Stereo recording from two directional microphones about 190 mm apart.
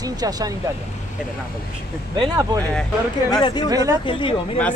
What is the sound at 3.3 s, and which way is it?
Speech, 20° left (ahead or behind).